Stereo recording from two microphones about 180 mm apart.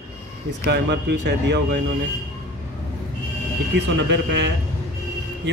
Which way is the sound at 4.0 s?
80° right.